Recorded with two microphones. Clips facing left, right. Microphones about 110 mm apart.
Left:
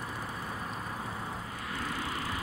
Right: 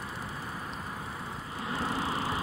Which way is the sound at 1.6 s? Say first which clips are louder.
Right 5 dB; 25° right (ahead or behind).